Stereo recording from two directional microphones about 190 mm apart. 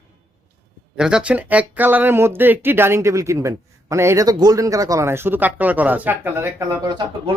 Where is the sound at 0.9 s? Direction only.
5° right (ahead or behind).